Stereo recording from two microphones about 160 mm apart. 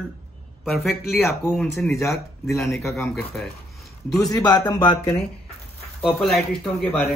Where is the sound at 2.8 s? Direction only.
15° left (ahead or behind).